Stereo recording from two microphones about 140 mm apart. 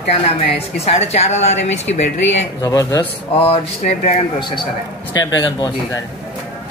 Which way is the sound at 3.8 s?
75° left (ahead or behind).